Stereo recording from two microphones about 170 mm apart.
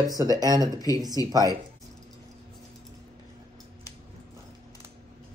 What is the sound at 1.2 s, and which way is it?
Speech, 20° left (ahead or behind).